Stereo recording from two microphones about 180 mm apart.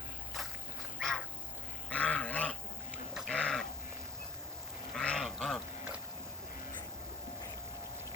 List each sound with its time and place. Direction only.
0.9 s dog: centre (ahead or behind)
4.9 s goat: 5° left (ahead or behind)